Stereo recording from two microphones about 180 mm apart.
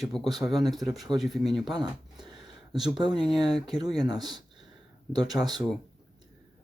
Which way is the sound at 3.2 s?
25° right (ahead or behind).